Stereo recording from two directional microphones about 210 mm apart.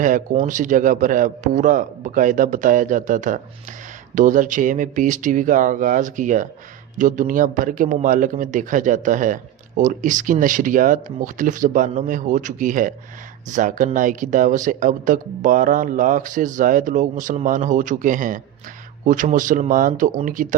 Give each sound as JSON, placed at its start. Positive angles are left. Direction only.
{"t": 0.0, "sound": "a man's voice", "side_deg": -40}